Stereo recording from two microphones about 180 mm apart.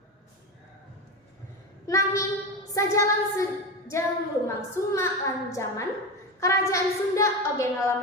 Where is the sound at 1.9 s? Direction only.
15° left (ahead or behind).